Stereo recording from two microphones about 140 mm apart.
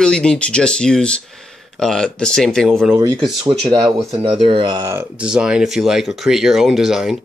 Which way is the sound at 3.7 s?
35° right (ahead or behind).